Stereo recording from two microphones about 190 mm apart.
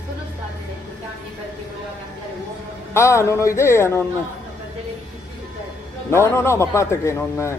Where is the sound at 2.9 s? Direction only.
15° left (ahead or behind).